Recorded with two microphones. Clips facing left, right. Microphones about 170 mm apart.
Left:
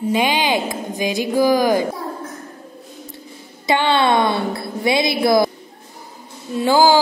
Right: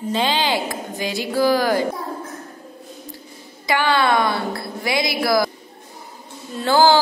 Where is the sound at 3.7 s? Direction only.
25° left (ahead or behind).